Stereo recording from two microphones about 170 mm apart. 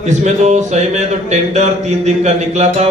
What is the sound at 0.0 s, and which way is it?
Speech, 40° right (ahead or behind).